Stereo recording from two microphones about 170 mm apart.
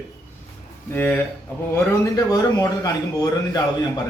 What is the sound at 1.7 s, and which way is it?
Speech, 20° left (ahead or behind).